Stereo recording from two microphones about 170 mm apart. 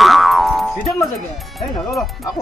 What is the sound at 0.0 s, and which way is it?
Speech, centre (ahead or behind).